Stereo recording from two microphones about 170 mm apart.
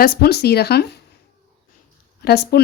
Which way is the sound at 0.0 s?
70° left (ahead or behind).